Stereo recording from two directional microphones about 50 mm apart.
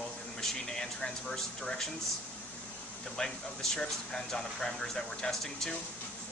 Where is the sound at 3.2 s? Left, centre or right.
Centre.